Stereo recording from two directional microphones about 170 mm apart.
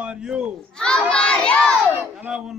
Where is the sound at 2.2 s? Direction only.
5° right (ahead or behind).